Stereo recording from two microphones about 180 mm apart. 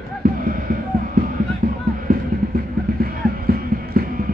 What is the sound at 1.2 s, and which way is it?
Music, 50° right (ahead or behind).